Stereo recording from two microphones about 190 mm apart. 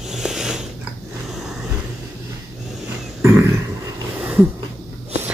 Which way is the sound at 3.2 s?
15° right (ahead or behind).